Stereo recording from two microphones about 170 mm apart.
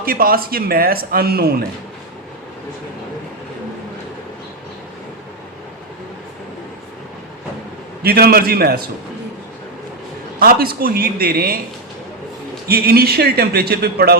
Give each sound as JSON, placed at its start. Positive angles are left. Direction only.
{"t": 0.0, "sound": "a man's voice", "side_deg": -60}
{"t": 8.0, "sound": "a man's voice", "side_deg": -65}
{"t": 10.4, "sound": "a man's voice", "side_deg": -60}
{"t": 12.6, "sound": "a man's voice", "side_deg": -65}